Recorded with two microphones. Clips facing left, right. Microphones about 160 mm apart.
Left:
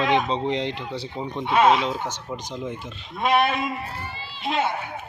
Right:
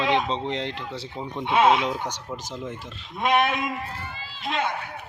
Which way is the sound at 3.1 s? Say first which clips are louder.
Left 1 dB; 15° right (ahead or behind).